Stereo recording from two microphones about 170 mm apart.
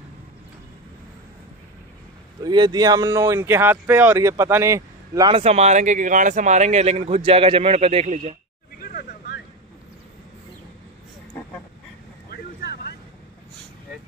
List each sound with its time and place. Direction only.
2.4 s speech: 25° right (ahead or behind)
5.4 s a man's voice: 40° right (ahead or behind)